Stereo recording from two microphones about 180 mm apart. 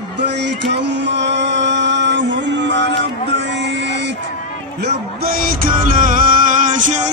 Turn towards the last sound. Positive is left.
turn(degrees=-45)  # may be behind; listen again after turning